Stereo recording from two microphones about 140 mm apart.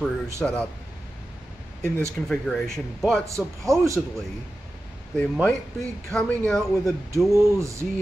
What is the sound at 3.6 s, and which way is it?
Speech, 20° right (ahead or behind).